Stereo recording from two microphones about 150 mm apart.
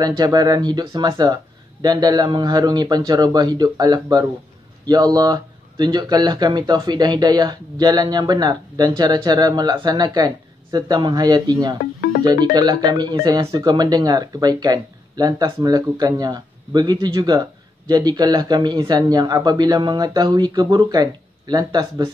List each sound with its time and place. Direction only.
0.0 s speech: 25° right (ahead or behind)
11.8 s speech: 90° left
12.2 s speech: 25° right (ahead or behind)